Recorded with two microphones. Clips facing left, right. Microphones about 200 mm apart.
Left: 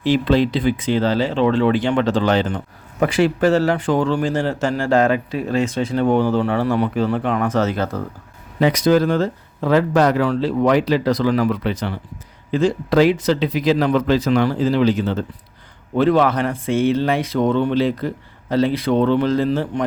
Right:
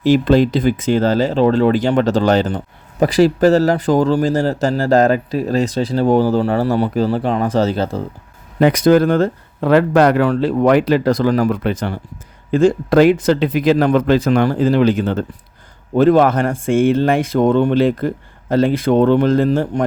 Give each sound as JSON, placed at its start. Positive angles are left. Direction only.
{"t": 0.0, "sound": "a man's voice", "side_deg": -45}
{"t": 8.5, "sound": "speech", "side_deg": -50}